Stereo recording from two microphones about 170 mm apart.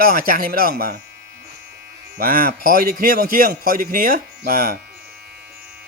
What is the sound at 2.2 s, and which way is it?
Speech, 60° right (ahead or behind).